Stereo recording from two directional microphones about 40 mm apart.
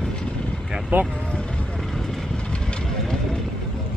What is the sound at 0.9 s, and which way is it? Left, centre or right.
Speech, right.